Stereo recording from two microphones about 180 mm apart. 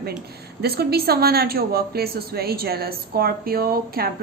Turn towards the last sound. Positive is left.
turn(degrees=-55)  # may be behind; listen again after turning